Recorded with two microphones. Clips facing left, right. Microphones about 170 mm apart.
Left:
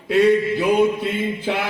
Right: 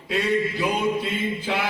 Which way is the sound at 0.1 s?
60° left (ahead or behind).